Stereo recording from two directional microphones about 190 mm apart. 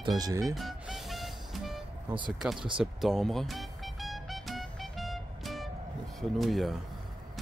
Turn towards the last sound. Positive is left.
turn(degrees=0)  # may be behind; listen again after turning